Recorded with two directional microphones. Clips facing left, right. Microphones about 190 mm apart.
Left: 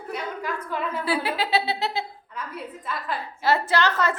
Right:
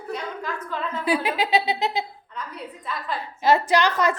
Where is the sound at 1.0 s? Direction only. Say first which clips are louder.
Right 5 dB; 15° right (ahead or behind).